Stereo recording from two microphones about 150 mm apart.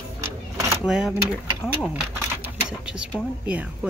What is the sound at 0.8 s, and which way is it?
Speech, 5° right (ahead or behind).